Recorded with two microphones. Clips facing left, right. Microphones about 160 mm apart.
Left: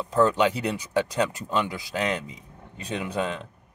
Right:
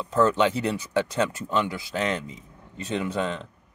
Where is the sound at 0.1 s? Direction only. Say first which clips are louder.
Even; 15° left (ahead or behind).